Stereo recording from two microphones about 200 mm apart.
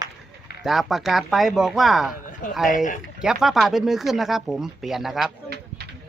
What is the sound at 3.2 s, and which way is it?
Speech, centre (ahead or behind).